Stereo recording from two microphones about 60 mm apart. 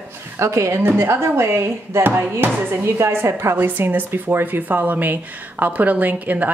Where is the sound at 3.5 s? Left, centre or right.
Right.